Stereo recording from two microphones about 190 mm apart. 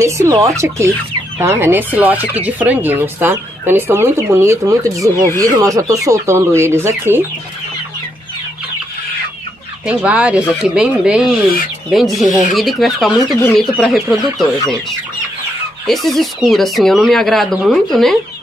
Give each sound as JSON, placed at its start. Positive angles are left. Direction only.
{"t": 0.0, "sound": "speech", "side_deg": -15}
{"t": 9.8, "sound": "speech", "side_deg": -5}